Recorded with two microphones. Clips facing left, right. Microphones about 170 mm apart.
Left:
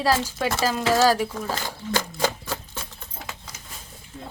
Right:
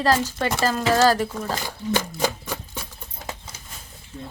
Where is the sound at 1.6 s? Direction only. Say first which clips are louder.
Right 2 dB; 15° right (ahead or behind).